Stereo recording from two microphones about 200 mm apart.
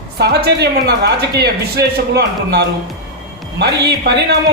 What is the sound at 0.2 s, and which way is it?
A woman's voice, 55° right (ahead or behind).